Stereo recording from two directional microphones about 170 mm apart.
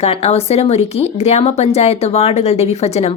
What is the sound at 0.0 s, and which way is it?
A woman's voice, 35° left (ahead or behind).